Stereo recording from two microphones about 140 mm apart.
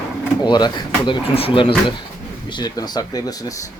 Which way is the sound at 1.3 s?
40° left (ahead or behind).